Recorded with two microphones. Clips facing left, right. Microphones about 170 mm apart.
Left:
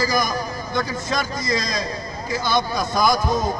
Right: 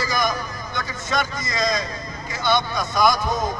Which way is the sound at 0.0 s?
35° left (ahead or behind).